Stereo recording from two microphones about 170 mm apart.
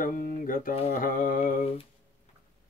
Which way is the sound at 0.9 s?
55° left (ahead or behind).